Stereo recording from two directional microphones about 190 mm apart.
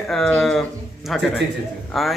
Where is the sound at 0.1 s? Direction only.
Centre (ahead or behind).